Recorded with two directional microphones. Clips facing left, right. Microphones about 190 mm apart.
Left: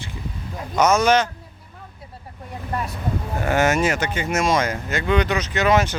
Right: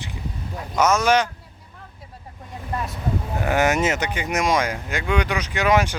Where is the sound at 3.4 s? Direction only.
15° right (ahead or behind).